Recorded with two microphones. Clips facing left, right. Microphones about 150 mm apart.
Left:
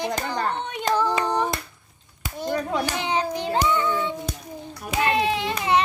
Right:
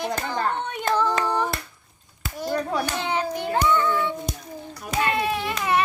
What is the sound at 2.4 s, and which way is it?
Children playing, 20° left (ahead or behind).